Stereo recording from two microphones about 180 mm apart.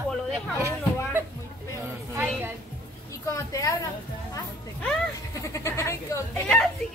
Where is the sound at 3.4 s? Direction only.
20° left (ahead or behind).